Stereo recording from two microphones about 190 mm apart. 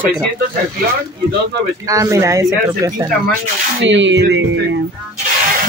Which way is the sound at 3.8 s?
70° right (ahead or behind).